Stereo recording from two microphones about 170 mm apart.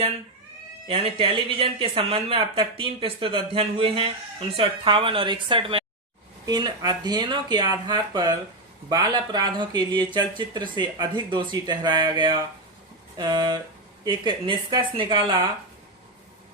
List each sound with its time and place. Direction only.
0.9 s speech: 35° right (ahead or behind)